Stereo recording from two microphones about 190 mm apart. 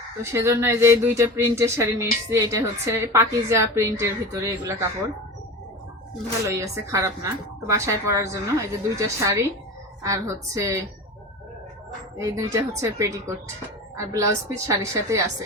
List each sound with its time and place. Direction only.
0.3 s speech: 15° right (ahead or behind)
6.4 s speech: 15° right (ahead or behind)
12.1 s speech: 15° right (ahead or behind)